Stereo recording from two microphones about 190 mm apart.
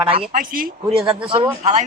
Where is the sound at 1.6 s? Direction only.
35° right (ahead or behind).